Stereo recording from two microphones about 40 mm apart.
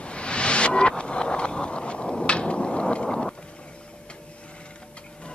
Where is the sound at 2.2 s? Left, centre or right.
Left.